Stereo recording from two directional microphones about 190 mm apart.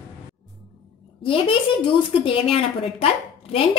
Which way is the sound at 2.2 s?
30° left (ahead or behind).